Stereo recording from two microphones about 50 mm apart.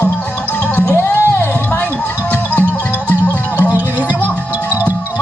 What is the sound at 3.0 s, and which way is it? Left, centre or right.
Music, left.